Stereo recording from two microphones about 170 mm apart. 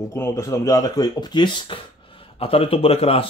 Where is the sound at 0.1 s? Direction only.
15° left (ahead or behind).